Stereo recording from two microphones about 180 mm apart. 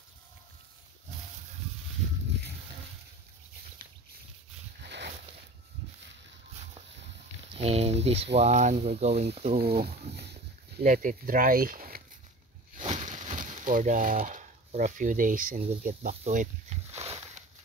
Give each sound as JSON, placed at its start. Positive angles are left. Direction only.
{"t": 4.8, "sound": "a sound", "side_deg": -70}
{"t": 7.5, "sound": "speech", "side_deg": -35}
{"t": 10.8, "sound": "speech", "side_deg": -50}
{"t": 12.7, "sound": "speech", "side_deg": -40}